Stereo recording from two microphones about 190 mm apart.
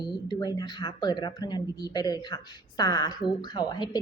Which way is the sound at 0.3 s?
20° left (ahead or behind).